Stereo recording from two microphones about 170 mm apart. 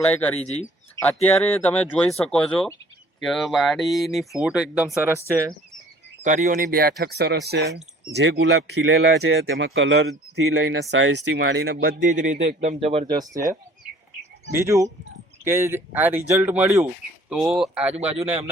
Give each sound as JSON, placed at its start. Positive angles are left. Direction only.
{"t": 0.1, "sound": "speech", "side_deg": 10}
{"t": 6.2, "sound": "speech", "side_deg": -50}
{"t": 7.0, "sound": "speech", "side_deg": -70}
{"t": 8.1, "sound": "speech", "side_deg": -90}
{"t": 9.7, "sound": "speech", "side_deg": -90}
{"t": 13.1, "sound": "speech", "side_deg": -20}
{"t": 18.2, "sound": "speech", "side_deg": -40}